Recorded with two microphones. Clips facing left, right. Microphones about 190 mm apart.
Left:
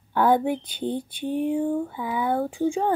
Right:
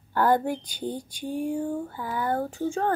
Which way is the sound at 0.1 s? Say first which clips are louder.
Left 2 dB; centre (ahead or behind).